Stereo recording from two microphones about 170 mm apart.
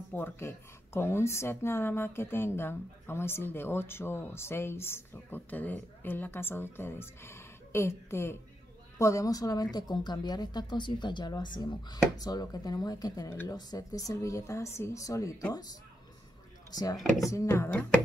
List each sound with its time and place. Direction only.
0.1 s a woman's voice: 15° left (ahead or behind)
16.7 s a woman's voice: 25° left (ahead or behind)